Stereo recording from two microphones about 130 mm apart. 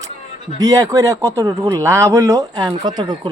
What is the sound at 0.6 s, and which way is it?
Speech, 25° right (ahead or behind).